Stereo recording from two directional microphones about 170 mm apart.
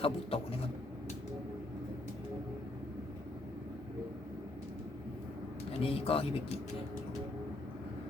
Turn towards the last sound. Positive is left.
turn(degrees=35)  # may be behind; listen again after turning